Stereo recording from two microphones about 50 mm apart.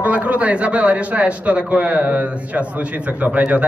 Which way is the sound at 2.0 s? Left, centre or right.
Right.